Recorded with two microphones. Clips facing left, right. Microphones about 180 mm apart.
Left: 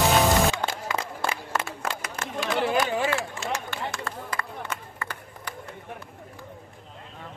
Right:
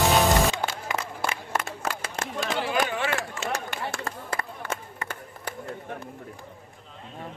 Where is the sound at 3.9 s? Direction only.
30° right (ahead or behind).